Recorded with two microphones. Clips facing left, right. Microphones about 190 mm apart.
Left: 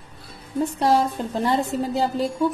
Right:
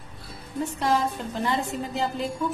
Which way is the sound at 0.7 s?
35° left (ahead or behind).